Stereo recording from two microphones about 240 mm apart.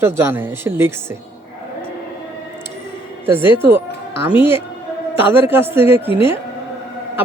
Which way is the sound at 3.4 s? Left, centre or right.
Centre.